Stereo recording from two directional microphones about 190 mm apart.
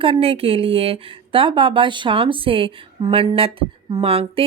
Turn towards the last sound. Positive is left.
turn(degrees=-30)  # may be behind; listen again after turning